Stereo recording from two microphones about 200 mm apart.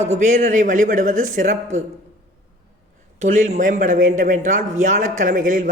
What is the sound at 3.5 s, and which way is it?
Speech, 40° right (ahead or behind).